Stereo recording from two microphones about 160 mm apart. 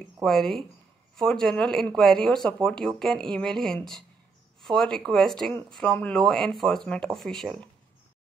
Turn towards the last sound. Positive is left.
turn(degrees=0)  # may be behind; listen again after turning